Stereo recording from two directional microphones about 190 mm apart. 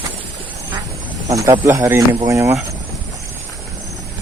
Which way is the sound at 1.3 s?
20° right (ahead or behind).